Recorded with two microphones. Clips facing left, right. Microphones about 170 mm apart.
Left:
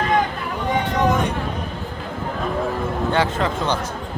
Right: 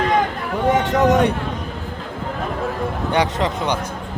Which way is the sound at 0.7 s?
80° right.